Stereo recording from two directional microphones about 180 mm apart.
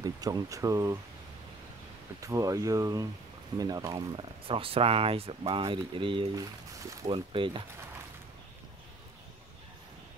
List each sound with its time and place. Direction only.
0.0 s speech: 20° right (ahead or behind)
2.1 s speech: 20° right (ahead or behind)
4.5 s speech: 30° right (ahead or behind)